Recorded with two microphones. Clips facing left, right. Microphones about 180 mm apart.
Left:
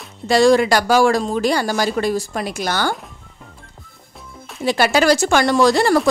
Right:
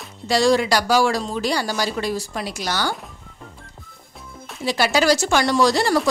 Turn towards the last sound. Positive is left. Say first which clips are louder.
# left 4 dB
turn(degrees=55)  # may be behind; listen again after turning